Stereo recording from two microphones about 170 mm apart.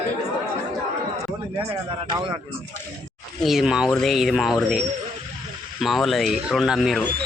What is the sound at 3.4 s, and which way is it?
Speech, centre (ahead or behind).